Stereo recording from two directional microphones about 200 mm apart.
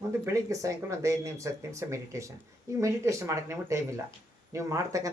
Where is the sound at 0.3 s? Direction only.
15° right (ahead or behind).